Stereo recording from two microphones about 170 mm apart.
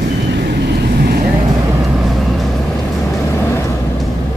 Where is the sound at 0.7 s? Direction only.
65° right (ahead or behind).